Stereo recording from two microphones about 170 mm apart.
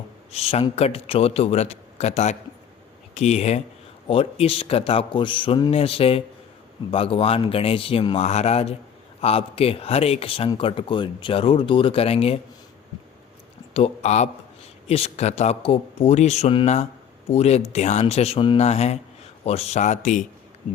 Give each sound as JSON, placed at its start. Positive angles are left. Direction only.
{"t": 0.3, "sound": "a man's voice", "side_deg": 35}
{"t": 13.7, "sound": "a man's voice", "side_deg": 35}